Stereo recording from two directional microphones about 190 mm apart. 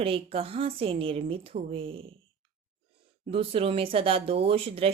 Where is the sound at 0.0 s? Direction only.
30° right (ahead or behind).